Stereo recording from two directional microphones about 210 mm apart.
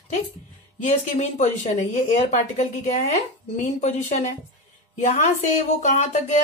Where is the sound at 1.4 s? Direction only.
35° left (ahead or behind).